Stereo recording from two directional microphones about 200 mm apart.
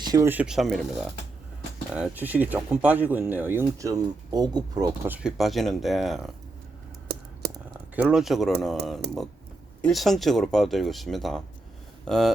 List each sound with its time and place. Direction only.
0.0 s speech: 15° right (ahead or behind); by 6.3 s centre (ahead or behind)
7.4 s typing: 50° right (ahead or behind)
7.9 s speech: 5° right (ahead or behind)
9.0 s speech: 55° right (ahead or behind)
9.8 s speech: centre (ahead or behind)